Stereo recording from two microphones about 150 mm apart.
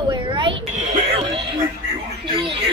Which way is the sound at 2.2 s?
35° right (ahead or behind).